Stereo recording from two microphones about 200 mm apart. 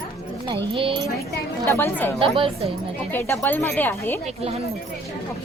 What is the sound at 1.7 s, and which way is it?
Speech, 10° left (ahead or behind).